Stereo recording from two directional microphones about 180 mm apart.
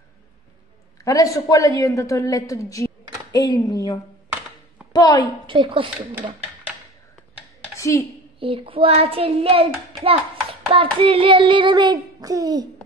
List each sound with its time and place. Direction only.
1.0 s a woman's voice: 20° left (ahead or behind)
5.5 s hands: 30° right (ahead or behind)
7.8 s speech: 15° left (ahead or behind)
8.4 s hands: 30° right (ahead or behind)